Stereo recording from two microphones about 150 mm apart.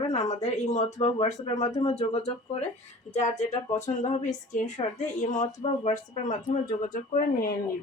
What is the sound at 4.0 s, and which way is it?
A woman's voice, 50° left (ahead or behind).